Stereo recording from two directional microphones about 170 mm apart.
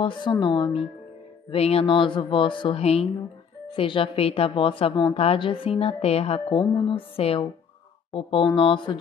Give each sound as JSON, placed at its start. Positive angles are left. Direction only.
{"t": 0.0, "sound": "a woman's voice", "side_deg": 25}